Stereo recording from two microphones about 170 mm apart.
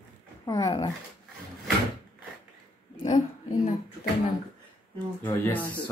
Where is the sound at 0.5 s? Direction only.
20° left (ahead or behind).